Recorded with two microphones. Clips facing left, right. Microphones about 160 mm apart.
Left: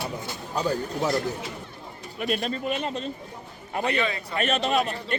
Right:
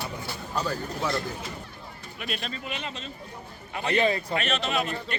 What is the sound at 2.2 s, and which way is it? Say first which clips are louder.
A man's voice: left 8 dB; 45° left (ahead or behind).